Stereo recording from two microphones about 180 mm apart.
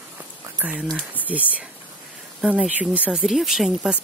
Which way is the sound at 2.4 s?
5° right (ahead or behind).